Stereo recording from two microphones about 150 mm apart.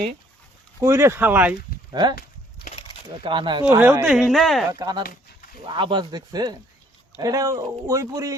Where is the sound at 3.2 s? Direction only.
35° right (ahead or behind).